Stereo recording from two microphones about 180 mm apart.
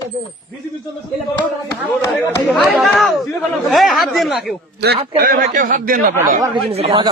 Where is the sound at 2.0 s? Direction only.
15° left (ahead or behind).